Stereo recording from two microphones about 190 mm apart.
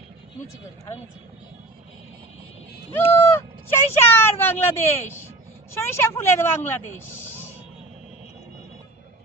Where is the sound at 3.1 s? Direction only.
10° left (ahead or behind).